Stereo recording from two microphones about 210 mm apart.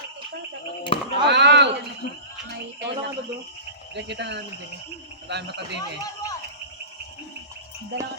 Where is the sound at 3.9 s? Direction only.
55° right (ahead or behind).